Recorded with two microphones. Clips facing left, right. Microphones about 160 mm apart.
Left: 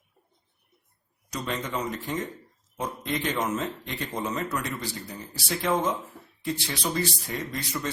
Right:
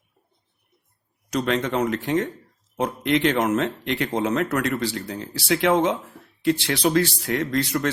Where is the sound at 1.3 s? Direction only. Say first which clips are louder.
Right 9 dB; 75° right (ahead or behind).